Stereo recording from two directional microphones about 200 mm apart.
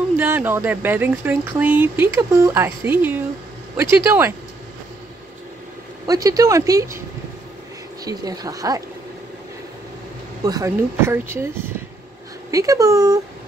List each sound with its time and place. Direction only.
0.2 s speech: 10° right (ahead or behind)
6.0 s speech: 15° right (ahead or behind)
8.0 s speech: 20° right (ahead or behind)
10.4 s speech: 15° right (ahead or behind)